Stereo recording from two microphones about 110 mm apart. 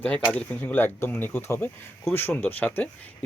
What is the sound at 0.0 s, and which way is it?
Speech, 15° left (ahead or behind).